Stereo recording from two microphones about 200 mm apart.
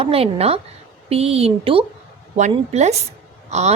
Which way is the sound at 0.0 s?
30° right (ahead or behind).